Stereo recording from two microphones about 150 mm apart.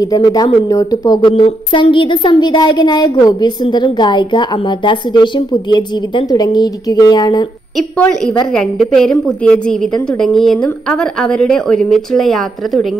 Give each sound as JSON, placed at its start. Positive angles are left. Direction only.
{"t": 0.0, "sound": "speech", "side_deg": 25}
{"t": 7.7, "sound": "a woman's voice", "side_deg": 5}